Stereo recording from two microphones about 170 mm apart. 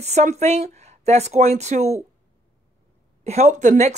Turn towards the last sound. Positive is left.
turn(degrees=-45)  # may be behind; listen again after turning